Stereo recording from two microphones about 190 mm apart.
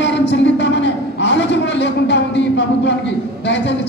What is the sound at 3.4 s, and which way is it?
Speech, 70° left (ahead or behind).